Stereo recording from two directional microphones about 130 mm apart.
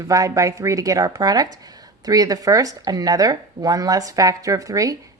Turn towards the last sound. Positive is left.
turn(degrees=-25)  # may be behind; listen again after turning